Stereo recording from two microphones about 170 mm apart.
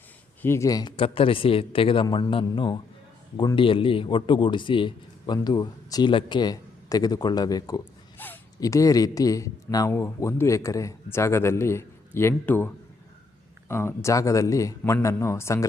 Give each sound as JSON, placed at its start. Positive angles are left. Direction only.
{"t": 0.4, "sound": "a man's voice", "side_deg": 15}